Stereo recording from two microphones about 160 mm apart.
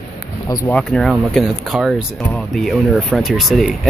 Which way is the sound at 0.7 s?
5° left (ahead or behind).